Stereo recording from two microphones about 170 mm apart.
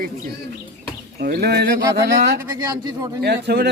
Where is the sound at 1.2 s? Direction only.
65° right (ahead or behind).